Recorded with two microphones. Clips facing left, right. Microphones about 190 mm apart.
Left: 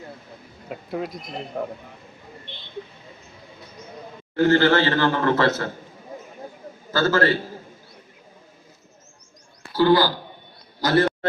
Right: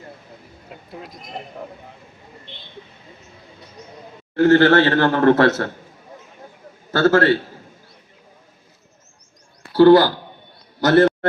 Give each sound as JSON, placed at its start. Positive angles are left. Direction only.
{"t": 0.9, "sound": "speech", "side_deg": 65}
{"t": 1.5, "sound": "speech", "side_deg": 45}
{"t": 4.4, "sound": "a man's voice", "side_deg": -65}
{"t": 6.9, "sound": "a man's voice", "side_deg": -70}
{"t": 9.7, "sound": "speech", "side_deg": -65}
{"t": 10.8, "sound": "a sound", "side_deg": -65}